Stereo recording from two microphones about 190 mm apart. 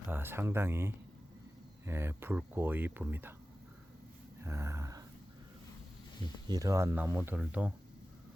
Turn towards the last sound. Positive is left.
turn(degrees=-5)  # may be behind; listen again after turning